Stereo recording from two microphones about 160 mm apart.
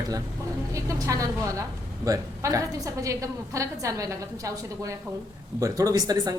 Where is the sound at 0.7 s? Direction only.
20° right (ahead or behind).